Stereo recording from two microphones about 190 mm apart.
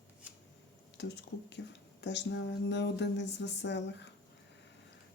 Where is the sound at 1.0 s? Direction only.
65° left (ahead or behind).